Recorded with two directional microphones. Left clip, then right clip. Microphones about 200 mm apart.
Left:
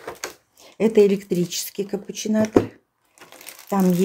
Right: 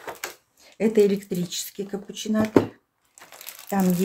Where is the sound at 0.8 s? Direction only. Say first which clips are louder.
Left 3 dB; 30° left (ahead or behind).